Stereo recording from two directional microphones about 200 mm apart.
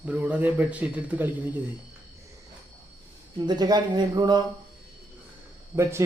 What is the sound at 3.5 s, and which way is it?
Speech, 20° right (ahead or behind).